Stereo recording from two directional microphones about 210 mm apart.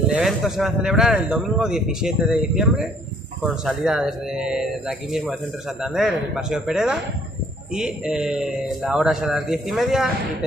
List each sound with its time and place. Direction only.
0.1 s speech: centre (ahead or behind)